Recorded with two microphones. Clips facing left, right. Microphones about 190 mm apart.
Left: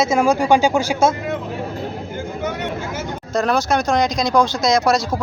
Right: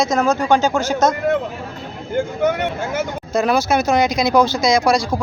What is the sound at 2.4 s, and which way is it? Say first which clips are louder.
Speech: right 4 dB; 55° right (ahead or behind).